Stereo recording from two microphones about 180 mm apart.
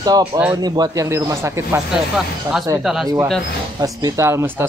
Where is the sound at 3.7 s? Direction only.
20° right (ahead or behind).